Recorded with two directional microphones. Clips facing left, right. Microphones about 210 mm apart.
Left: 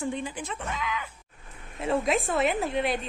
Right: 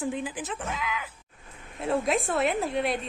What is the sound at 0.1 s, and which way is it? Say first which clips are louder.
A woman's voice: right 1 dB; 5° right (ahead or behind).